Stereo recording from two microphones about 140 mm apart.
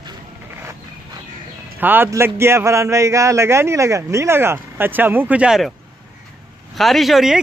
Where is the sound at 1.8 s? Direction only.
15° right (ahead or behind).